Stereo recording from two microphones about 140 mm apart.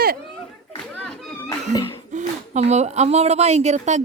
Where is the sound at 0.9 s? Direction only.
5° left (ahead or behind).